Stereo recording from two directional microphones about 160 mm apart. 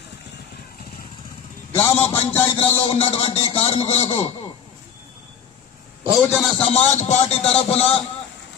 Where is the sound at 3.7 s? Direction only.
40° left (ahead or behind).